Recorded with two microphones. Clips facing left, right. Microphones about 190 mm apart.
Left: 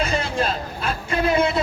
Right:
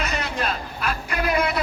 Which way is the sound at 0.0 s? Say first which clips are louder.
Left 4 dB; 30° left (ahead or behind).